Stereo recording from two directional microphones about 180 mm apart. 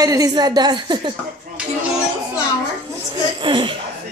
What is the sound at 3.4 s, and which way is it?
Speech, 30° right (ahead or behind).